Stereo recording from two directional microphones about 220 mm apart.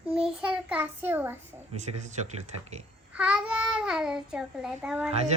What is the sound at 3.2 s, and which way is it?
Child singing, 5° right (ahead or behind).